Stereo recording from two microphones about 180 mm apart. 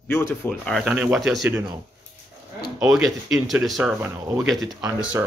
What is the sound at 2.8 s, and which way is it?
Speech, centre (ahead or behind).